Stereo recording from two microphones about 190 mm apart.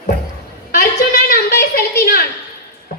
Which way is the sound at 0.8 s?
55° left (ahead or behind).